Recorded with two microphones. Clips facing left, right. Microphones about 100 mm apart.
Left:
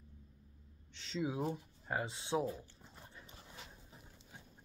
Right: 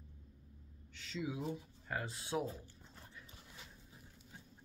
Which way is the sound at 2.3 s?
10° left (ahead or behind).